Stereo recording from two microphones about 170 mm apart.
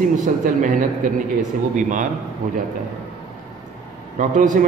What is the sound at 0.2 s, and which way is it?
Speech, 50° right (ahead or behind).